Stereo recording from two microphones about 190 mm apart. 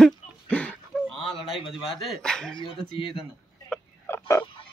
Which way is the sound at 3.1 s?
Centre (ahead or behind).